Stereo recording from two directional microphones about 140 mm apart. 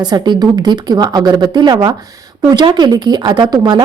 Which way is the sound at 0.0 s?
30° right (ahead or behind).